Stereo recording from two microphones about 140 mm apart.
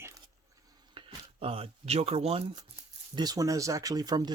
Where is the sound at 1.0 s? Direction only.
40° right (ahead or behind).